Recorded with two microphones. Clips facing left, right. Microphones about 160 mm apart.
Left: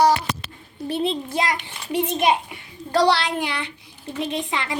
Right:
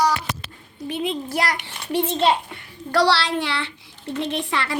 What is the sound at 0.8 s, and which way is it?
Speech, 35° left (ahead or behind).